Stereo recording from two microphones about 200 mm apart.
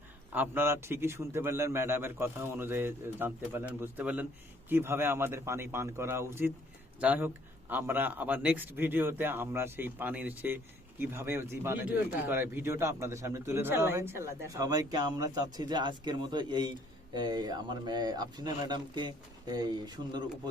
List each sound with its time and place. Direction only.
0.3 s a man's voice: 10° right (ahead or behind)